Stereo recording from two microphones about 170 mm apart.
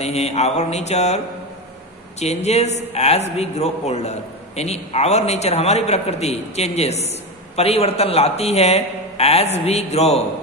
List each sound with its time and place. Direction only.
0.0 s a man's voice: 40° left (ahead or behind)